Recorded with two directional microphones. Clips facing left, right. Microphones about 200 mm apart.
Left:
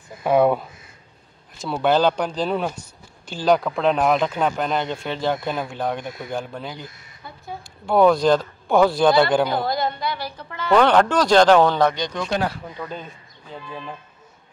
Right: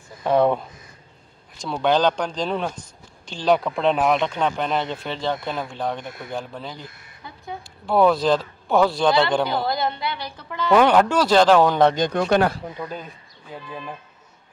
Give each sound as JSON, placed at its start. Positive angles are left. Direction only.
{"t": 0.2, "sound": "speech", "side_deg": 10}
{"t": 10.7, "sound": "speech", "side_deg": -5}
{"t": 11.9, "sound": "speech", "side_deg": -55}
{"t": 12.7, "sound": "speech", "side_deg": -10}